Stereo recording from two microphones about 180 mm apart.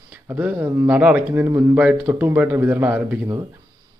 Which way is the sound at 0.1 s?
10° right (ahead or behind).